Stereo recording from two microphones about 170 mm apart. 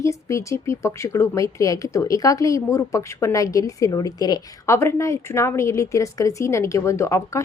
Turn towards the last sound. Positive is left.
turn(degrees=15)  # may be behind; listen again after turning